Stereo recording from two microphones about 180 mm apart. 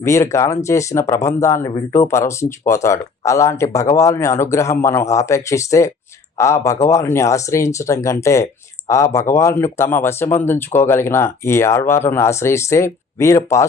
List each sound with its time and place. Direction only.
0.0 s speech: 15° left (ahead or behind)